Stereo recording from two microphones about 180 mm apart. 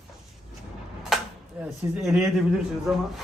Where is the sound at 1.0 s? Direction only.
Centre (ahead or behind).